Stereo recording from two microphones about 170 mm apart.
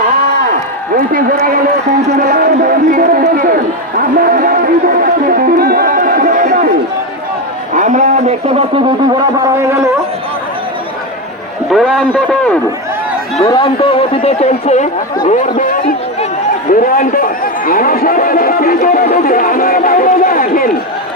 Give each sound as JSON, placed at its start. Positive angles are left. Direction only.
{"t": 1.1, "sound": "speech", "side_deg": -55}
{"t": 7.7, "sound": "speech", "side_deg": -50}
{"t": 11.7, "sound": "a man's voice", "side_deg": 0}
{"t": 13.4, "sound": "a man's voice", "side_deg": 25}